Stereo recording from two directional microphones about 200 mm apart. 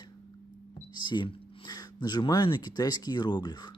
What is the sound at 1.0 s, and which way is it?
Speech, 20° left (ahead or behind).